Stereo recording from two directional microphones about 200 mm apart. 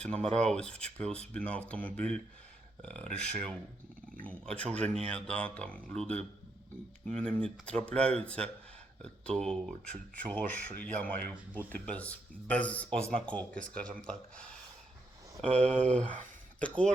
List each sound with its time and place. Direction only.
0.2 s speech: 5° left (ahead or behind)
15.4 s speech: 30° right (ahead or behind)
16.6 s speech: 5° left (ahead or behind)